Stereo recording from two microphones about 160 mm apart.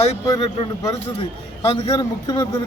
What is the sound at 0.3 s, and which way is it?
Speech, 20° left (ahead or behind).